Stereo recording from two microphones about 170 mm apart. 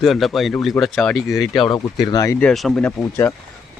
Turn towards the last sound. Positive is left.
turn(degrees=15)  # may be behind; listen again after turning